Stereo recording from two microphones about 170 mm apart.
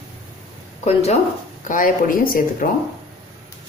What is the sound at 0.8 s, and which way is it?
Speech, 40° left (ahead or behind).